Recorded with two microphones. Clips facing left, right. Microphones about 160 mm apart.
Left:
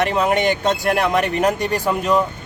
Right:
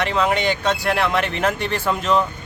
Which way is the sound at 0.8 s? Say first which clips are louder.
Left 2 dB; 45° left (ahead or behind).